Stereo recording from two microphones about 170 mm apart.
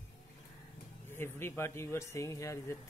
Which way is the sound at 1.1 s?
15° left (ahead or behind).